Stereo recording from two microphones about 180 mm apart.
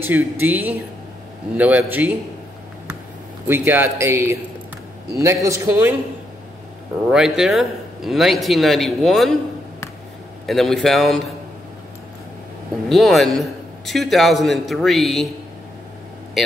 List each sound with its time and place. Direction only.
0.0 s speech: 10° right (ahead or behind)
3.4 s speech: 10° right (ahead or behind)
7.1 s a man's voice: 5° right (ahead or behind)
10.4 s a man's voice: centre (ahead or behind)
12.9 s a man's voice: centre (ahead or behind)